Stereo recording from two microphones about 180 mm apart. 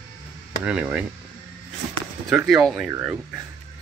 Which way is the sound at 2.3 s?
5° right (ahead or behind).